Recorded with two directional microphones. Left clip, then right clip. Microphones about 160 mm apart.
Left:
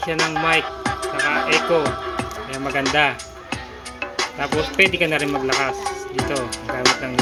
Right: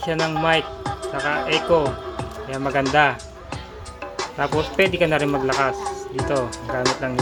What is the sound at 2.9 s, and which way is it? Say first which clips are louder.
Speech: right 1 dB; 5° right (ahead or behind).